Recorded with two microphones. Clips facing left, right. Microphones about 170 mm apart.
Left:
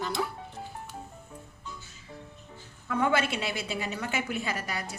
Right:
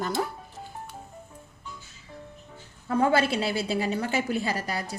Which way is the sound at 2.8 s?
35° right (ahead or behind).